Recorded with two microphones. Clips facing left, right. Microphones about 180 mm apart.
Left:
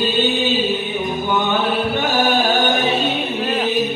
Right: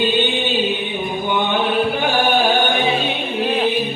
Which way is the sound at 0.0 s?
40° left (ahead or behind).